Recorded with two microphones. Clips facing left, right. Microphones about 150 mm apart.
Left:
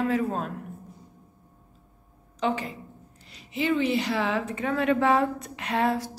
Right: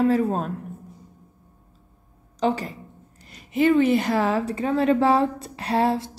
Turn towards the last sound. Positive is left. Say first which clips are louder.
# right 4 dB
turn(degrees=-30)  # may be behind; listen again after turning